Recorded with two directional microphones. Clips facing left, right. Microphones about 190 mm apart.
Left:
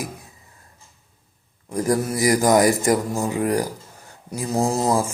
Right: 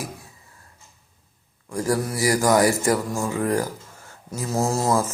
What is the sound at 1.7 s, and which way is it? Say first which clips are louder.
A man's voice: left 2 dB; 20° left (ahead or behind).